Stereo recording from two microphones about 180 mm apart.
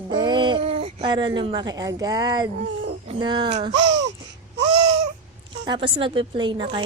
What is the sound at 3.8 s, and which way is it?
Babbling, 75° right (ahead or behind).